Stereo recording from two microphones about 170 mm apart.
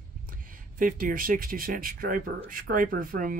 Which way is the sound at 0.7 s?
55° right (ahead or behind).